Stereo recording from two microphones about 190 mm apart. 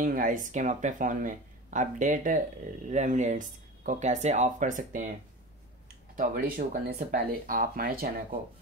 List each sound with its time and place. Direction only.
0.0 s speech: 45° right (ahead or behind)
6.1 s speech: 50° right (ahead or behind)